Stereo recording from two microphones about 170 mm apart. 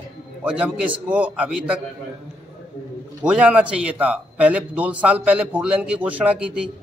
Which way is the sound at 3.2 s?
5° right (ahead or behind).